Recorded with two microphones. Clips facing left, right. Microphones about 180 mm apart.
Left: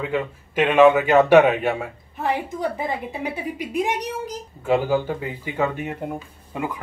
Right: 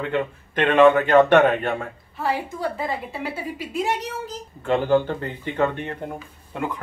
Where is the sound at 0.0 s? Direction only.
5° left (ahead or behind).